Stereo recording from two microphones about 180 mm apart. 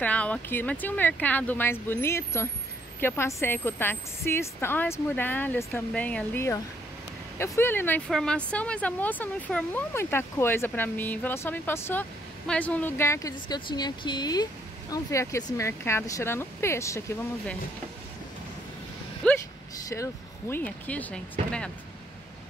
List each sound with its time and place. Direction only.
0.0 s speech: 10° left (ahead or behind)
19.2 s a sound: 5° left (ahead or behind)
19.9 s speech: 15° left (ahead or behind)